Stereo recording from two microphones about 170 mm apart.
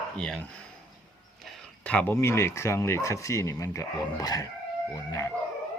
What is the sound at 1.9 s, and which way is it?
Speech, 10° left (ahead or behind).